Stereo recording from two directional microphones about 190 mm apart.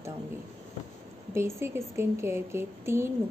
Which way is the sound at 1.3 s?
15° right (ahead or behind).